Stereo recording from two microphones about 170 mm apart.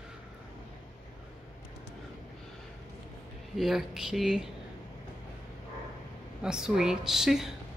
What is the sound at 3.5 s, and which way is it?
Speech, centre (ahead or behind).